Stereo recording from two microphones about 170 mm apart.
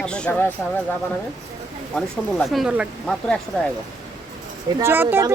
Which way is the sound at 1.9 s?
Centre (ahead or behind).